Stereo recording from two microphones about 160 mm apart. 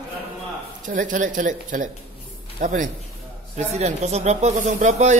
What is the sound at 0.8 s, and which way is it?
Speech, 55° right (ahead or behind).